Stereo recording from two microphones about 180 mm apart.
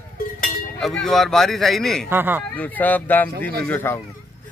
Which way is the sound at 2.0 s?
10° right (ahead or behind).